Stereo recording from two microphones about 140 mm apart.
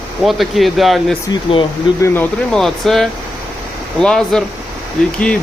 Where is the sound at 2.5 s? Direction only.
5° left (ahead or behind).